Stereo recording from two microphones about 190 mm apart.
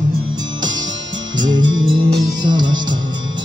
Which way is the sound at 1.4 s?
25° right (ahead or behind).